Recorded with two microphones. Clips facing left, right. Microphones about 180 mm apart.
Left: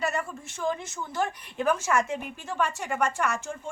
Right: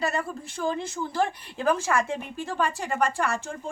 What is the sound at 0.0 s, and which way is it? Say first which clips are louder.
A woman's voice: right 2 dB; 35° right (ahead or behind).